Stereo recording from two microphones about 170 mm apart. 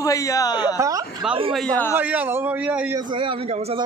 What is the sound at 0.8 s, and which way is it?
Speech, 20° right (ahead or behind).